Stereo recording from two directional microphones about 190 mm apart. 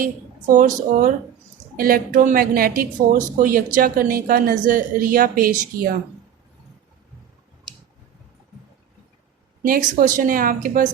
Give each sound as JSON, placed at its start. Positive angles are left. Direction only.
{"t": 0.5, "sound": "a woman's voice", "side_deg": -45}
{"t": 9.6, "sound": "a woman's voice", "side_deg": -45}